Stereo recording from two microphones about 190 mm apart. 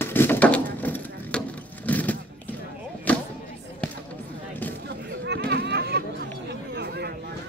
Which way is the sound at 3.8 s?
5° left (ahead or behind).